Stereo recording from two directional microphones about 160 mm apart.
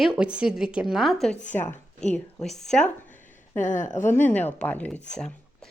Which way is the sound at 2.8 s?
50° left (ahead or behind).